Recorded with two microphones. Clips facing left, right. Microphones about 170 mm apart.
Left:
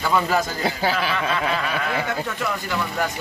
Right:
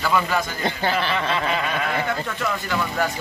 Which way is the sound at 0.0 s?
25° left (ahead or behind).